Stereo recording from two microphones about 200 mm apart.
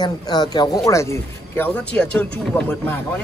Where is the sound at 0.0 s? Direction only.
20° left (ahead or behind).